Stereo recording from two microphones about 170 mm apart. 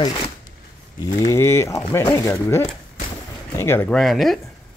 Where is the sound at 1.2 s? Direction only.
15° left (ahead or behind).